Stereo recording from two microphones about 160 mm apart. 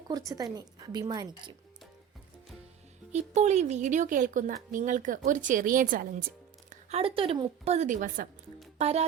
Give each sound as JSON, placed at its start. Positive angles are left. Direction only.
{"t": 0.1, "sound": "a woman's voice", "side_deg": -20}
{"t": 3.1, "sound": "a woman's voice", "side_deg": -45}
{"t": 6.9, "sound": "a woman's voice", "side_deg": -35}
{"t": 8.8, "sound": "a woman's voice", "side_deg": -40}